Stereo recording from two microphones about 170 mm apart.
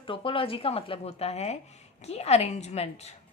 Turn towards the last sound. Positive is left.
turn(degrees=40)  # may be behind; listen again after turning